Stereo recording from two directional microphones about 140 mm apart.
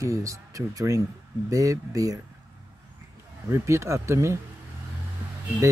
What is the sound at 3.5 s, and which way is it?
Speech, 20° right (ahead or behind).